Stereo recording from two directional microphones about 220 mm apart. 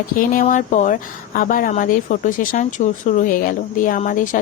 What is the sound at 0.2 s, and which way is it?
Speech, 35° left (ahead or behind).